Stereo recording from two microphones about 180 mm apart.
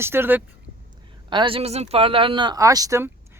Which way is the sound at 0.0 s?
10° right (ahead or behind).